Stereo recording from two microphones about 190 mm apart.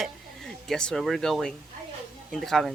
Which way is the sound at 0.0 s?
Centre (ahead or behind).